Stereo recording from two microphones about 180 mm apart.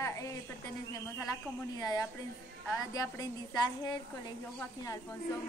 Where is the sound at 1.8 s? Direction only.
20° left (ahead or behind).